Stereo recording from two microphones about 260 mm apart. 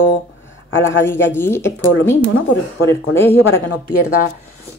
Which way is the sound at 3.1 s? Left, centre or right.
Centre.